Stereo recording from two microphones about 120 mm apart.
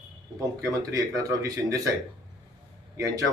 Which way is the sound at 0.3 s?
25° right (ahead or behind).